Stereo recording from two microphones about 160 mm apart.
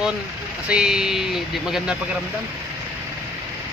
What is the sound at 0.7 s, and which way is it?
Speech, 5° right (ahead or behind).